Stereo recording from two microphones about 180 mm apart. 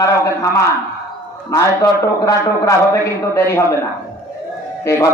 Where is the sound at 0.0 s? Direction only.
15° left (ahead or behind).